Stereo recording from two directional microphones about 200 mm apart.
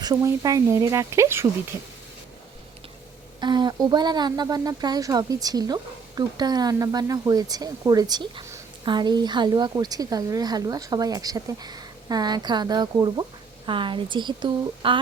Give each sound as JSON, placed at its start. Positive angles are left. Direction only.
{"t": 0.0, "sound": "speech", "side_deg": -15}
{"t": 3.4, "sound": "speech", "side_deg": -20}